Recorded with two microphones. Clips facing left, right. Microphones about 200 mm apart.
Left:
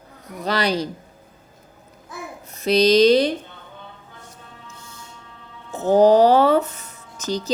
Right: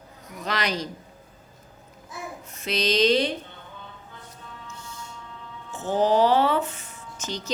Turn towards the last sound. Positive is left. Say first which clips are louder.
# left 7 dB
turn(degrees=35)  # may be behind; listen again after turning